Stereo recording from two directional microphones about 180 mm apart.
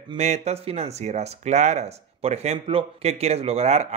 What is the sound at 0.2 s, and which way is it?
Speech, 40° right (ahead or behind).